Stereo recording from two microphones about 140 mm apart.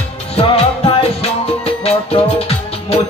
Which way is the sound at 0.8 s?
40° left (ahead or behind).